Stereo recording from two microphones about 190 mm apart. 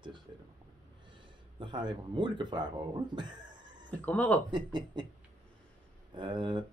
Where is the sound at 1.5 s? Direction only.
25° right (ahead or behind).